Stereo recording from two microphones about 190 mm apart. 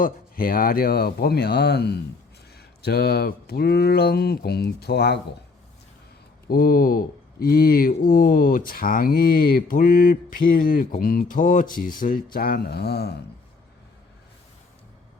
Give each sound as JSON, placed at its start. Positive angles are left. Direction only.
{"t": 0.0, "sound": "speech", "side_deg": 50}
{"t": 6.5, "sound": "speech", "side_deg": 50}